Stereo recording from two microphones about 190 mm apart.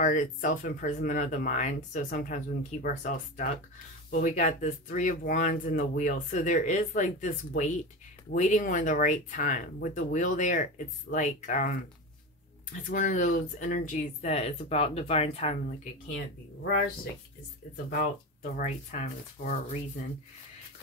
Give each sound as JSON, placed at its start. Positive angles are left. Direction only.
{"t": 0.0, "sound": "speech", "side_deg": 45}
{"t": 12.9, "sound": "speech", "side_deg": 40}
{"t": 17.8, "sound": "speech", "side_deg": 45}